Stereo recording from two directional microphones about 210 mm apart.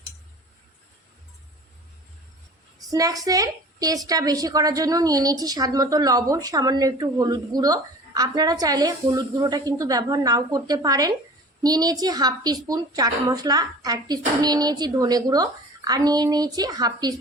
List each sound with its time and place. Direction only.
2.9 s a woman's voice: 15° right (ahead or behind)